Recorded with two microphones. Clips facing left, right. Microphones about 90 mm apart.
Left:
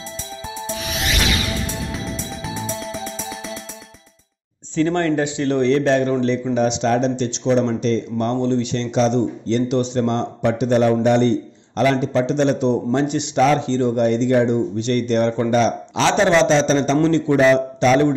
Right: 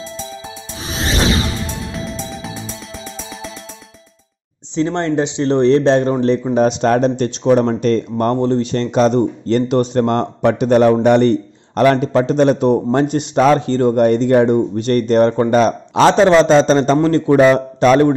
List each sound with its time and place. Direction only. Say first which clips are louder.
0.7 s music: right 5 dB; 30° right (ahead or behind)
2.0 s music: right 3 dB; centre (ahead or behind)
4.7 s speech: right 1 dB; 20° right (ahead or behind); by 18.1 s 45° right (ahead or behind)